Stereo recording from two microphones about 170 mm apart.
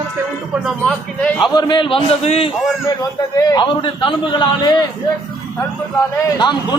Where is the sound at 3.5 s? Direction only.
25° left (ahead or behind).